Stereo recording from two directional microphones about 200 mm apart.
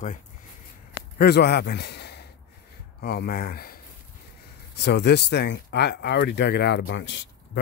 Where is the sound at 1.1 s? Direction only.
55° left (ahead or behind).